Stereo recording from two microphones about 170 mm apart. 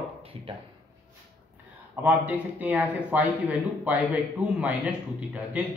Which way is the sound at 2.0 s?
10° right (ahead or behind).